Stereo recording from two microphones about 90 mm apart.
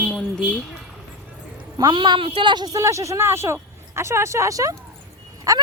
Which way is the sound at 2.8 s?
35° right (ahead or behind).